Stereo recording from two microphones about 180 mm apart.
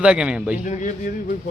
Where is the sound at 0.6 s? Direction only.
45° left (ahead or behind).